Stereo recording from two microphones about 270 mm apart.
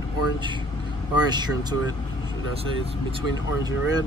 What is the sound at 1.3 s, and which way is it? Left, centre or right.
Speech, centre.